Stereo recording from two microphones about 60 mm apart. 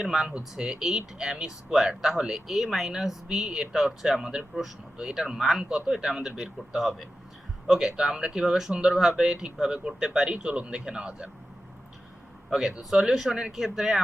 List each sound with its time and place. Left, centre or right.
0.0 s speech: centre
10.3 s speech: centre
12.5 s speech: centre